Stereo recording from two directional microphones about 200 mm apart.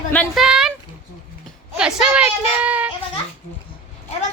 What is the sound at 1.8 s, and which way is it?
Speech, 5° right (ahead or behind).